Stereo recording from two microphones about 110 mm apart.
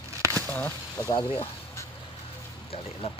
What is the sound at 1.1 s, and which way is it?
Speech, 45° left (ahead or behind).